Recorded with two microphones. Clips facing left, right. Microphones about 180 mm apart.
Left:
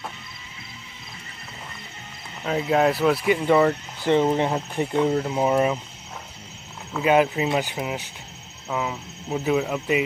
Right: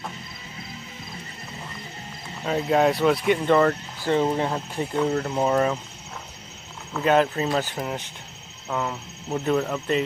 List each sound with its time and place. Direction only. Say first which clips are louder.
2.4 s speech: even; centre (ahead or behind)
4.0 s speech: left 2 dB; 20° left (ahead or behind)
6.9 s speech: left 1 dB; 5° left (ahead or behind)